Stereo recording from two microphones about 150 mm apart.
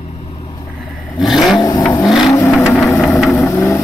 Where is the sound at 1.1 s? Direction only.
Centre (ahead or behind).